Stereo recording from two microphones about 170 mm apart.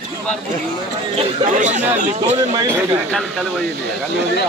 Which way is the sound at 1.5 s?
45° right (ahead or behind).